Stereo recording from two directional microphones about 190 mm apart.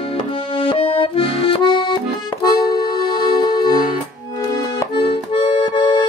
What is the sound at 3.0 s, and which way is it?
Music, 25° left (ahead or behind).